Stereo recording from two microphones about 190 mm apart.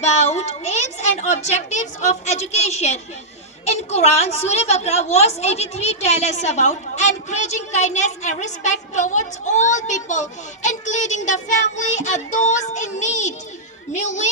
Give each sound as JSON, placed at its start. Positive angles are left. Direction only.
{"t": 0.0, "sound": "a woman's voice", "side_deg": 35}